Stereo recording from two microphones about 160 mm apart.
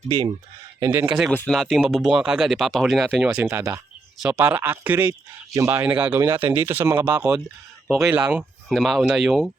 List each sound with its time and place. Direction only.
0.8 s speech: 15° right (ahead or behind)
1.3 s speech: 10° left (ahead or behind); by 5.8 s 20° right (ahead or behind)
5.8 s speech: 10° right (ahead or behind)